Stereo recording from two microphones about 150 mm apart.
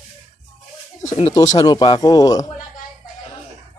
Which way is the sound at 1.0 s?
45° left (ahead or behind).